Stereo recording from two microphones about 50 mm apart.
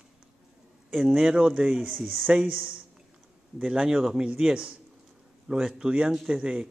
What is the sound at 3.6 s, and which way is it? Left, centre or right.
Speech, centre.